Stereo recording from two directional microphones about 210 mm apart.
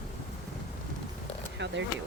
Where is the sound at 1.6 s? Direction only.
60° right (ahead or behind).